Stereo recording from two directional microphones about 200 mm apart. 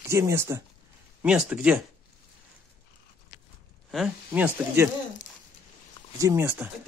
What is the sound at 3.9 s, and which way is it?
Speech, 5° right (ahead or behind).